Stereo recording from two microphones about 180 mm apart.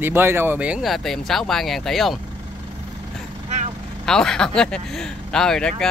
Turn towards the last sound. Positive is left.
turn(degrees=5)  # may be behind; listen again after turning